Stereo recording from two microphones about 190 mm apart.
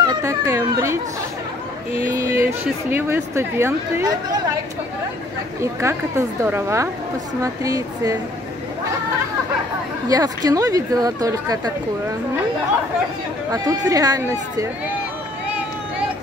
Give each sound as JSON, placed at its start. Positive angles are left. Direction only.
{"t": 0.1, "sound": "speech", "side_deg": -15}
{"t": 2.1, "sound": "speech", "side_deg": -15}
{"t": 5.6, "sound": "speech", "side_deg": -15}
{"t": 10.0, "sound": "speech", "side_deg": -20}
{"t": 13.5, "sound": "speech", "side_deg": -20}